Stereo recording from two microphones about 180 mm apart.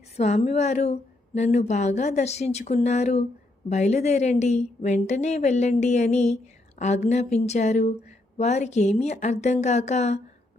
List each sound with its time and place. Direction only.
0.2 s a woman's voice: 35° left (ahead or behind)